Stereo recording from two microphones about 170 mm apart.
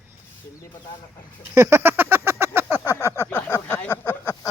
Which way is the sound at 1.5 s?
15° right (ahead or behind).